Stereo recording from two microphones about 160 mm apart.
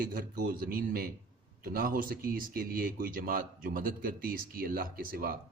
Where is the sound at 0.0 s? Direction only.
65° right (ahead or behind).